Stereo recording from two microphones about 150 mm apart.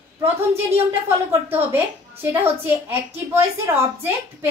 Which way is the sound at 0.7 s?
15° right (ahead or behind).